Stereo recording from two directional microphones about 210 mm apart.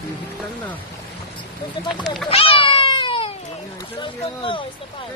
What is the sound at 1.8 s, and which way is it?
Speech, centre (ahead or behind).